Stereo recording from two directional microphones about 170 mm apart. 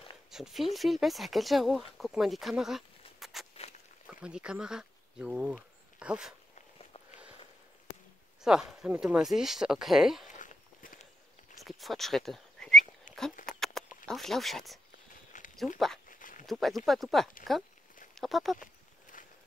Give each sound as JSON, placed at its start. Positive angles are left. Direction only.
{"t": 0.3, "sound": "speech", "side_deg": 0}
{"t": 3.5, "sound": "walk", "side_deg": 40}
{"t": 4.1, "sound": "speech", "side_deg": -5}
{"t": 8.4, "sound": "speech", "side_deg": 0}
{"t": 10.2, "sound": "walk", "side_deg": 50}
{"t": 11.6, "sound": "speech", "side_deg": 0}
{"t": 13.1, "sound": "a sound", "side_deg": 50}
{"t": 13.5, "sound": "a sound", "side_deg": 0}
{"t": 14.0, "sound": "speech", "side_deg": 0}
{"t": 15.3, "sound": "a sound", "side_deg": 50}
{"t": 16.4, "sound": "speech", "side_deg": 0}
{"t": 18.6, "sound": "walk", "side_deg": 50}